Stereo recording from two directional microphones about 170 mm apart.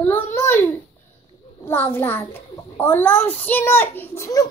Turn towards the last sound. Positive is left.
turn(degrees=15)  # may be behind; listen again after turning